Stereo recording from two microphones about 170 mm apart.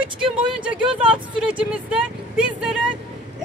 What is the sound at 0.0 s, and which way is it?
Speech, 30° right (ahead or behind).